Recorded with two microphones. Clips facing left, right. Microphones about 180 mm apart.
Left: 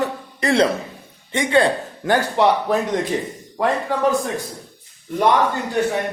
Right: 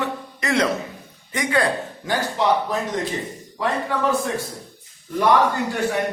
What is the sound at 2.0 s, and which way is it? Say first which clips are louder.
Speech: left 4 dB; 60° left (ahead or behind).